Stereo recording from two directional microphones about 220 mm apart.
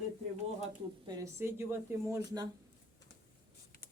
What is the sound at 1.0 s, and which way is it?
Speech, 15° right (ahead or behind).